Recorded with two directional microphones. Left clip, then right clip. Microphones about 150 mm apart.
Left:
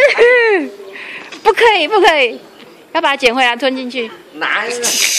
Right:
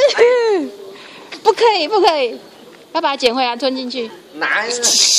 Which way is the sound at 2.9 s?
5° right (ahead or behind).